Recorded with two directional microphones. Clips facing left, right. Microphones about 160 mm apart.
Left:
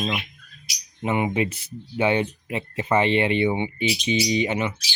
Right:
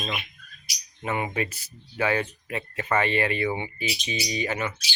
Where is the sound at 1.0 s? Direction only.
20° left (ahead or behind).